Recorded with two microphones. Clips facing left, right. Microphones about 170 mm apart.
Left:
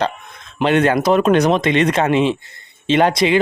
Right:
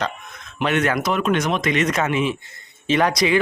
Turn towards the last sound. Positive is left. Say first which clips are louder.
# left 4 dB
turn(degrees=25)  # may be behind; listen again after turning